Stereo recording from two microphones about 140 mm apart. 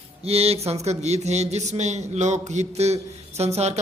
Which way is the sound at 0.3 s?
45° right (ahead or behind).